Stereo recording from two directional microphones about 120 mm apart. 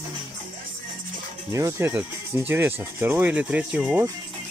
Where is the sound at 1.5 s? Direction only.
20° right (ahead or behind).